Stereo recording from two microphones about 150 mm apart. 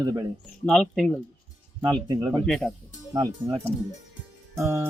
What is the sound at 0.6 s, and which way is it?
Speech, 5° left (ahead or behind).